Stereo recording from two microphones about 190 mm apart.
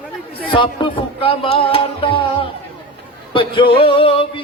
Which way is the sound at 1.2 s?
30° left (ahead or behind).